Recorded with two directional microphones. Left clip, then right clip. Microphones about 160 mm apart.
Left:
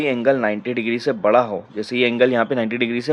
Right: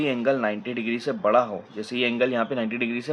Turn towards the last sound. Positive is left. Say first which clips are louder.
# left 6 dB
turn(degrees=45)  # may be behind; listen again after turning